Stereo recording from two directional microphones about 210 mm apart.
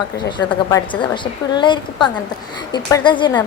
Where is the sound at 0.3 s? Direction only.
20° left (ahead or behind).